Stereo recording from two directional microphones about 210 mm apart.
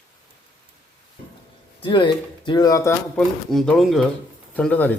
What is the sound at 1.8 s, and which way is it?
Speech, 20° left (ahead or behind).